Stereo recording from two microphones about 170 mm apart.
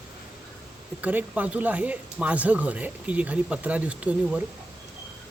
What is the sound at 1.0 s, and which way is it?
Speech, 10° right (ahead or behind).